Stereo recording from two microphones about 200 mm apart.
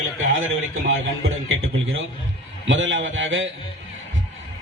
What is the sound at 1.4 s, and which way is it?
Speech, 90° right.